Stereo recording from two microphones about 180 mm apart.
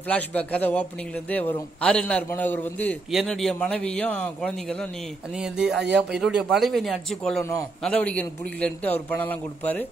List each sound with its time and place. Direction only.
0.1 s a man's voice: 10° left (ahead or behind)